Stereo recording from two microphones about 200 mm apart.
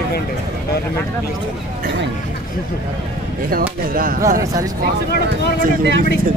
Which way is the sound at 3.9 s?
45° right (ahead or behind).